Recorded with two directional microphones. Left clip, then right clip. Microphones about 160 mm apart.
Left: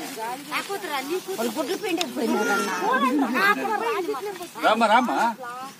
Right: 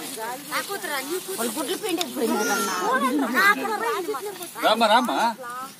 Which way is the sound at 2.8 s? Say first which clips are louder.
Left 1 dB; 40° left (ahead or behind).